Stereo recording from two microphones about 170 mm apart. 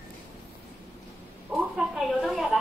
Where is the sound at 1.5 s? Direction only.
5° right (ahead or behind).